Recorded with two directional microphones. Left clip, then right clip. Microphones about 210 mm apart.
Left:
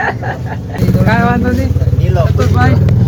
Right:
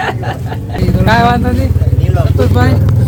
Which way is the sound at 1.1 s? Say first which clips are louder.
Right 4 dB; 25° right (ahead or behind).